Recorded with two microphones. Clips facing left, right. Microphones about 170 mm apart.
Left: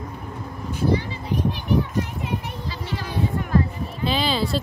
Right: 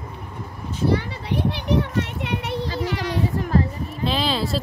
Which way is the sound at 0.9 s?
70° right (ahead or behind).